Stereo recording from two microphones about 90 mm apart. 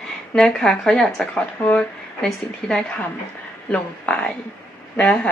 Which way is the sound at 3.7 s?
15° left (ahead or behind).